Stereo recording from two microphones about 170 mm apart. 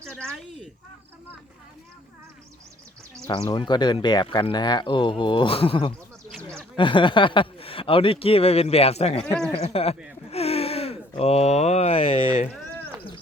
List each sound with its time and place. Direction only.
0.0 s speech: 5° left (ahead or behind)
3.2 s speech: 25° left (ahead or behind)